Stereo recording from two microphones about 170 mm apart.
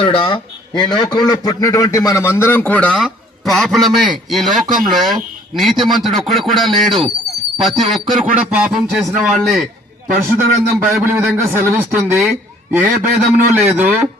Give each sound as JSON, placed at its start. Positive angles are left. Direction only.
{"t": 0.0, "sound": "a man's voice", "side_deg": 30}
{"t": 10.8, "sound": "a man's voice", "side_deg": -10}